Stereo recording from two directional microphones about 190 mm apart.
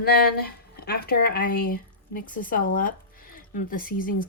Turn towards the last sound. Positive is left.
turn(degrees=45)  # may be behind; listen again after turning